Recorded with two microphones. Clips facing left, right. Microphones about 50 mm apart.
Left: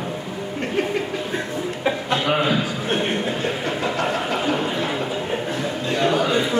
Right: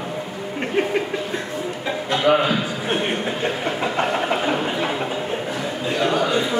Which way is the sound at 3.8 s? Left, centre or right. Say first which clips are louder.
Right 2 dB; right.